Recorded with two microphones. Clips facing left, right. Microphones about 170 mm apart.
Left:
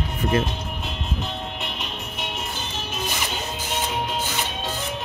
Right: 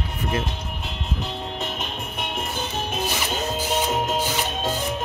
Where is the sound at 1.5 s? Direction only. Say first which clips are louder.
Right 3 dB; 45° right (ahead or behind).